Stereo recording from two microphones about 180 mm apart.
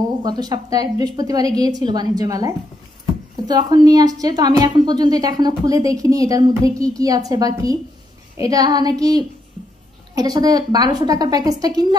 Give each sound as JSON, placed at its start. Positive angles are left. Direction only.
{"t": 0.2, "sound": "a woman's voice", "side_deg": -20}